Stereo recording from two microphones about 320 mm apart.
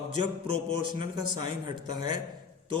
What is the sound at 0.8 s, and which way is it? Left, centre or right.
Speech, centre.